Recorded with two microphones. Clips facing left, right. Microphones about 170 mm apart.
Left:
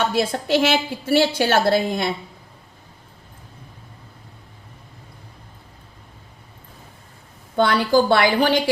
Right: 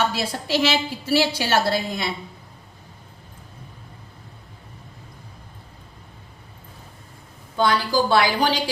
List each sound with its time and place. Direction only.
0.1 s a woman's voice: 50° left (ahead or behind)
7.5 s a woman's voice: 60° left (ahead or behind)